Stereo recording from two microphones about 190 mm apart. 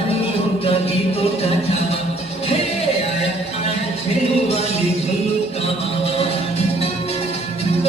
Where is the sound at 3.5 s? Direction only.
35° left (ahead or behind).